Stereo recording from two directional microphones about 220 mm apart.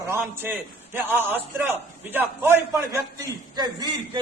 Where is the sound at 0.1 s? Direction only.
10° right (ahead or behind).